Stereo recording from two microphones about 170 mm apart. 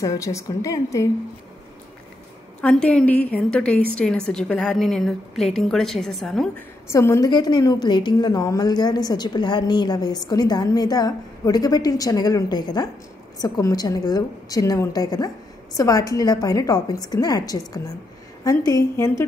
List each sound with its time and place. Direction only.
0.0 s a woman's voice: 20° left (ahead or behind)
2.6 s a woman's voice: 5° left (ahead or behind)
6.9 s a woman's voice: 15° left (ahead or behind)